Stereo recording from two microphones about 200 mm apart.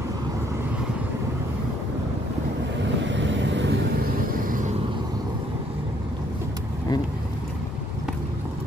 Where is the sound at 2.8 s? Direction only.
65° right (ahead or behind).